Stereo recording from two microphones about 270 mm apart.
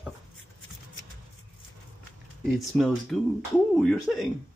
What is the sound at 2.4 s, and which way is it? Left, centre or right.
Speech, centre.